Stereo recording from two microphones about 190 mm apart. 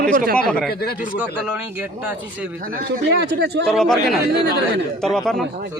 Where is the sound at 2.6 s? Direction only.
55° right (ahead or behind).